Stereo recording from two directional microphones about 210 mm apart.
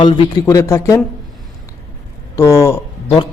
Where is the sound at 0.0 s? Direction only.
20° left (ahead or behind).